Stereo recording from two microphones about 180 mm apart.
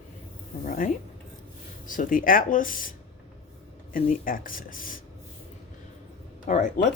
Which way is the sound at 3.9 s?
50° left (ahead or behind).